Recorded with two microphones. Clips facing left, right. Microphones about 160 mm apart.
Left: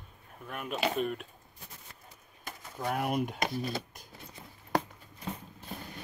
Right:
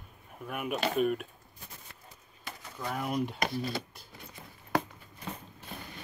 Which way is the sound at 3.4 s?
20° left (ahead or behind).